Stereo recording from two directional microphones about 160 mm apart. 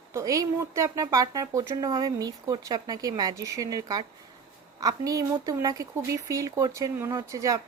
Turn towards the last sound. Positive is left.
turn(degrees=-20)  # may be behind; listen again after turning